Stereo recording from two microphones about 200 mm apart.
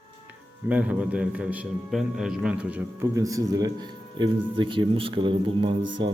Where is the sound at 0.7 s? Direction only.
5° right (ahead or behind).